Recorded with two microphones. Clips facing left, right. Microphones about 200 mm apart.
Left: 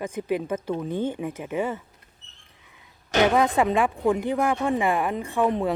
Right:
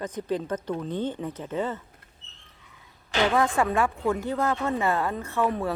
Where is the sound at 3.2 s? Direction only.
15° left (ahead or behind).